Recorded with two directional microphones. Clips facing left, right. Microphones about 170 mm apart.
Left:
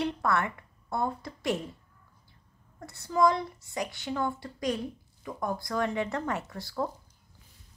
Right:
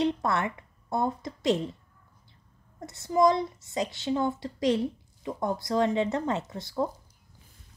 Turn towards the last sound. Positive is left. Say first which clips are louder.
# right 3 dB
turn(degrees=-20)  # may be behind; listen again after turning